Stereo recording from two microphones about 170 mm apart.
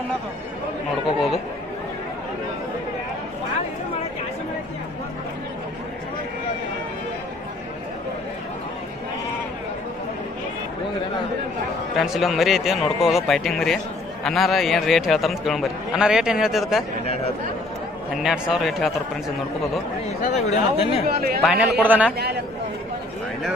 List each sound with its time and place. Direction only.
11.9 s a man's voice: centre (ahead or behind)
18.1 s a man's voice: 5° right (ahead or behind)
20.1 s speech: 40° left (ahead or behind)
21.1 s speech: 65° right (ahead or behind)
21.4 s a man's voice: centre (ahead or behind)